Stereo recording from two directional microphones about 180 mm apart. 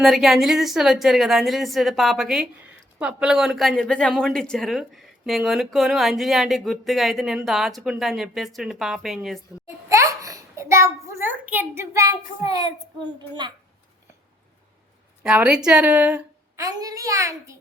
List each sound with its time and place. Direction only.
0.0 s speech: centre (ahead or behind)
9.9 s a sound: 15° right (ahead or behind)
15.2 s speech: 5° right (ahead or behind)
16.6 s a child's voice: 20° right (ahead or behind)